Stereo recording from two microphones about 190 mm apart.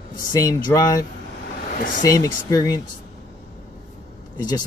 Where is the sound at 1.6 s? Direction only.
45° left (ahead or behind).